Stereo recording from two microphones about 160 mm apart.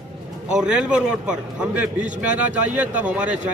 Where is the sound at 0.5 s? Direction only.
5° right (ahead or behind).